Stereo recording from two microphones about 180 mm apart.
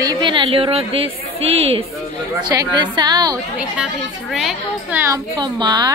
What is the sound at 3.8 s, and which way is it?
Speech, centre (ahead or behind).